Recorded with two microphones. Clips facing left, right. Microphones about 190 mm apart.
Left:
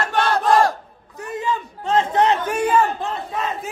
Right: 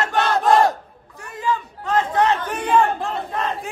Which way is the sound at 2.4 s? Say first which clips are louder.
Even; 5° left (ahead or behind).